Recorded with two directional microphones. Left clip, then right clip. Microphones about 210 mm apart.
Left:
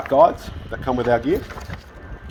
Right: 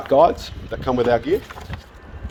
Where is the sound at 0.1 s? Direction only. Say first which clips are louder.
Even; 50° right (ahead or behind).